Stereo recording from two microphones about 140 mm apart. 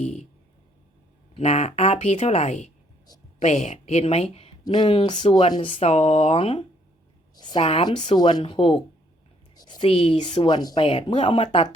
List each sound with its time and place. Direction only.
0.0 s speech: 55° left (ahead or behind)
1.3 s a woman's voice: 50° left (ahead or behind)
4.6 s a woman's voice: 30° left (ahead or behind)
7.3 s a sound: 30° left (ahead or behind)
7.6 s a woman's voice: 45° left (ahead or behind)
7.9 s speech: 35° left (ahead or behind)
9.6 s whispering: 30° left (ahead or behind)
9.9 s speech: 40° left (ahead or behind)
10.8 s speech: 40° left (ahead or behind)